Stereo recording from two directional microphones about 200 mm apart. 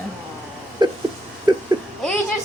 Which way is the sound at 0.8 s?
20° right (ahead or behind).